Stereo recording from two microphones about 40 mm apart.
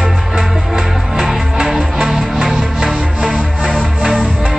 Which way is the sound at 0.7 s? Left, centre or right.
Centre.